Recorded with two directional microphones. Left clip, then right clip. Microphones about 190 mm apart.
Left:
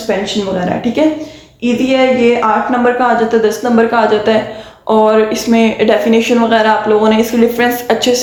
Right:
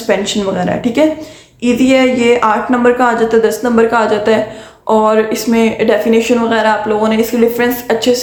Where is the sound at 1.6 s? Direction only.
25° right (ahead or behind).